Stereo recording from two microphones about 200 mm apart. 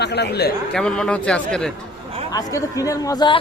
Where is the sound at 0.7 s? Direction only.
5° left (ahead or behind).